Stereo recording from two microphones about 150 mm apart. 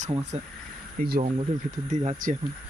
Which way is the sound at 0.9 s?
90° right.